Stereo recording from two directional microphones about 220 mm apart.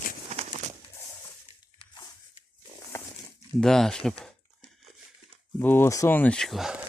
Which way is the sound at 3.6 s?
Centre (ahead or behind).